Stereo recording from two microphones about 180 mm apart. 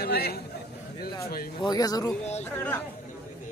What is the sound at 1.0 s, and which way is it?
Speech, 55° left (ahead or behind).